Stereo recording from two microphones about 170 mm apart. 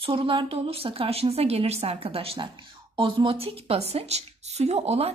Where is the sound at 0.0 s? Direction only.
30° right (ahead or behind).